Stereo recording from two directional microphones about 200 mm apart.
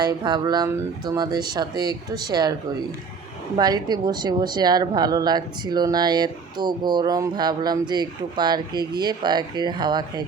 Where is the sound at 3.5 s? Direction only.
20° right (ahead or behind).